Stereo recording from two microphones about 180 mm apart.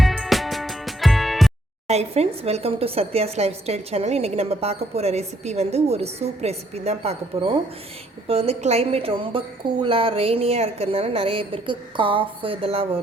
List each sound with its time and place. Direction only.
0.0 s music: centre (ahead or behind)
1.9 s speech: 35° right (ahead or behind)